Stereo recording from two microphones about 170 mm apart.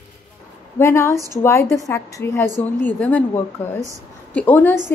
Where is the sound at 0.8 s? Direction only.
15° left (ahead or behind).